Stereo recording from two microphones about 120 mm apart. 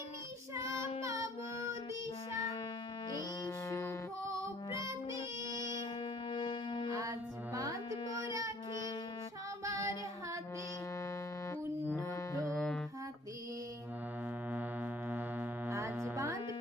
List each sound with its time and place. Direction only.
0.5 s child singing: 25° right (ahead or behind)
1.0 s music: 25° right (ahead or behind)
3.1 s music: 35° left (ahead or behind)
3.7 s music: 25° left (ahead or behind)
4.8 s music: 25° right (ahead or behind)
6.3 s music: 40° left (ahead or behind)
7.0 s music: 30° right (ahead or behind)
8.0 s child singing: 45° left (ahead or behind)
8.3 s child singing: 25° right (ahead or behind)
9.6 s child singing: 25° right (ahead or behind)
11.9 s music: 25° left (ahead or behind)
12.5 s music: 5° left (ahead or behind)
14.5 s music: 15° right (ahead or behind)